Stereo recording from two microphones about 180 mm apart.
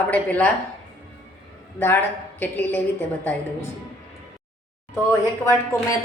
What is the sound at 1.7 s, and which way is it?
A woman's voice, 10° left (ahead or behind).